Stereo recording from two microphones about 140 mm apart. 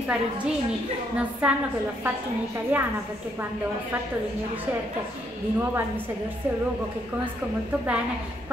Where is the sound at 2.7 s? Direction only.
10° right (ahead or behind).